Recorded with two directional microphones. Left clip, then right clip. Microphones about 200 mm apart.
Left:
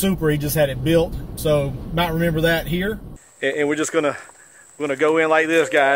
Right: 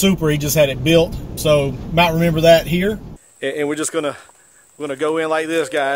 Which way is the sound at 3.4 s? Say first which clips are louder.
Left 1 dB; 35° right (ahead or behind).